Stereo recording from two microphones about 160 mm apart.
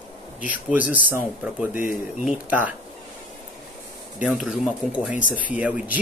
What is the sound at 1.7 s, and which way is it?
Speech, 55° left (ahead or behind).